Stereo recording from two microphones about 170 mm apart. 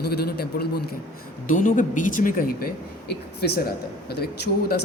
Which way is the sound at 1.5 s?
50° left (ahead or behind).